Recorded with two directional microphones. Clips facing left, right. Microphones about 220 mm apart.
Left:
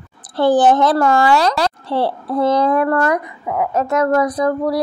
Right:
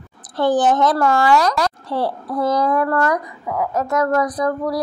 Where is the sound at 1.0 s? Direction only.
25° left (ahead or behind).